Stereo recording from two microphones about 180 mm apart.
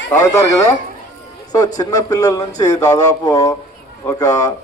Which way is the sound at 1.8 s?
20° left (ahead or behind).